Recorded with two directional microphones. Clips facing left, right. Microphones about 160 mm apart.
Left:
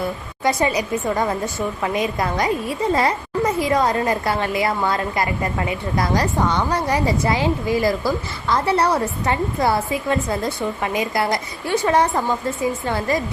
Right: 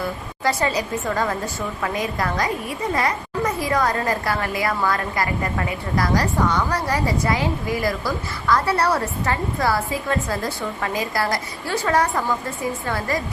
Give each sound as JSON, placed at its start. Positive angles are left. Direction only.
{"t": 0.0, "sound": "a child's voice", "side_deg": 20}